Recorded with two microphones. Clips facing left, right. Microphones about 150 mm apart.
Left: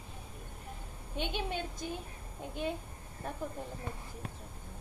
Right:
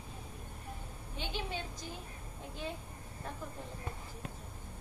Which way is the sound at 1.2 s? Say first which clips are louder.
Left 4 dB; 60° left (ahead or behind).